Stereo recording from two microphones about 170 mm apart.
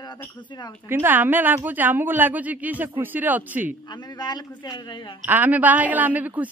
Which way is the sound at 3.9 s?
25° left (ahead or behind).